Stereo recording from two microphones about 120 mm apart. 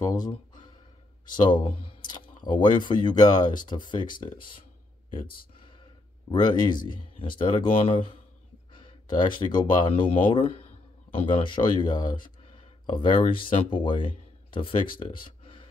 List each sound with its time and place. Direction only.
0.0 s speech: 35° left (ahead or behind)
6.2 s speech: 35° left (ahead or behind)